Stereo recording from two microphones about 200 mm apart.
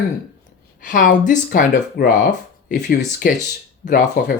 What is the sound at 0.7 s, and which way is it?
A woman's voice, 40° left (ahead or behind).